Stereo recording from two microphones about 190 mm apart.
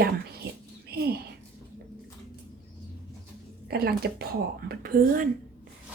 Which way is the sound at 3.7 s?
55° right (ahead or behind).